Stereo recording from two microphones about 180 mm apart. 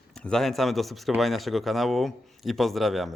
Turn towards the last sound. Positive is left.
turn(degrees=0)  # may be behind; listen again after turning